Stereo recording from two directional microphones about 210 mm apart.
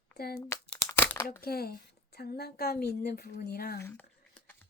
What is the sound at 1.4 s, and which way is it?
Speech, 45° left (ahead or behind).